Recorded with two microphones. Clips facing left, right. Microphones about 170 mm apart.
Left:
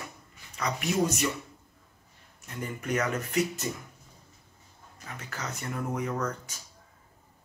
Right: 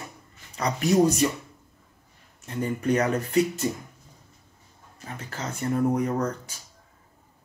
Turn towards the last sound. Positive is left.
turn(degrees=-35)  # may be behind; listen again after turning